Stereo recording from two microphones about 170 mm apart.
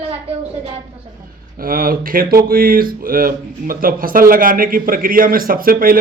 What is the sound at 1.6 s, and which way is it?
Speech, 55° right (ahead or behind).